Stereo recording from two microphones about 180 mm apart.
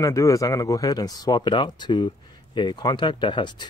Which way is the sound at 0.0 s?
20° left (ahead or behind).